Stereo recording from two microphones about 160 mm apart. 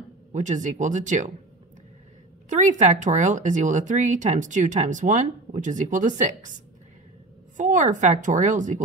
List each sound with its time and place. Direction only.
0.3 s speech: 50° right (ahead or behind)
2.5 s speech: 50° right (ahead or behind)